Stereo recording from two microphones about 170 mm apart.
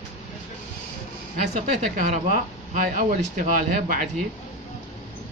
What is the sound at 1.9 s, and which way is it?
Speech, 45° right (ahead or behind).